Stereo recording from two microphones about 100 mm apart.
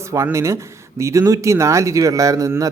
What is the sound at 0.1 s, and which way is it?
A man's voice, 30° right (ahead or behind).